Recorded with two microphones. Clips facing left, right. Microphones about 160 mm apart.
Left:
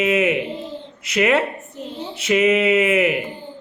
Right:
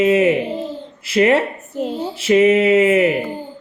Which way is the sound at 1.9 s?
40° right (ahead or behind).